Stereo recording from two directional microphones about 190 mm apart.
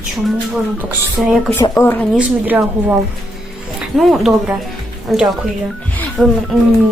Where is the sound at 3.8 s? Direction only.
Centre (ahead or behind).